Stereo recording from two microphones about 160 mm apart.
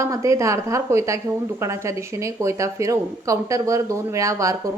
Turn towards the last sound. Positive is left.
turn(degrees=-20)  # may be behind; listen again after turning